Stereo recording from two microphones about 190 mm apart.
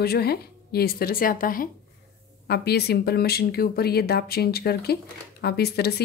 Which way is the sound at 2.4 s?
60° left (ahead or behind).